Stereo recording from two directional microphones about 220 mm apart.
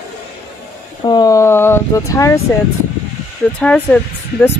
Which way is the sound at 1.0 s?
20° left (ahead or behind).